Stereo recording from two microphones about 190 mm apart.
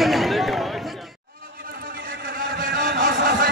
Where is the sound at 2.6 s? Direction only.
50° right (ahead or behind).